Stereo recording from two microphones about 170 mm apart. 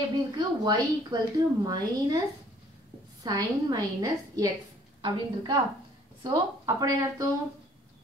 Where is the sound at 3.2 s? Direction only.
25° right (ahead or behind).